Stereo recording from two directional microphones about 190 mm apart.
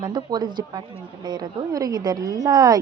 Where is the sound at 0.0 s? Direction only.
25° right (ahead or behind).